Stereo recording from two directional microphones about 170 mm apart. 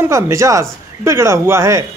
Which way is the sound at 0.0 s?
15° right (ahead or behind).